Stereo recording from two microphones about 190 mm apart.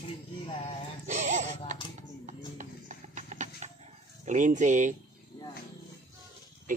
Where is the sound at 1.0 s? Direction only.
40° right (ahead or behind).